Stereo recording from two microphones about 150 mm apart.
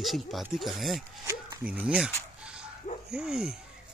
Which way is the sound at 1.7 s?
10° right (ahead or behind).